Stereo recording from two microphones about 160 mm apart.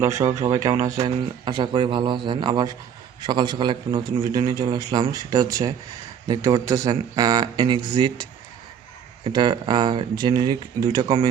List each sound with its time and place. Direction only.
0.0 s a man's voice: 20° right (ahead or behind)